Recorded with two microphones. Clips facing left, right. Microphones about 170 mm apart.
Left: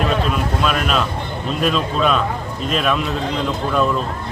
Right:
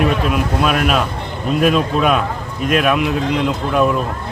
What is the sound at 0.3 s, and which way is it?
Speech, 5° right (ahead or behind).